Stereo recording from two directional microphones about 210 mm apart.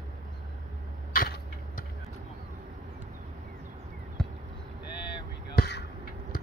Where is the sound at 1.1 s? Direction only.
45° left (ahead or behind).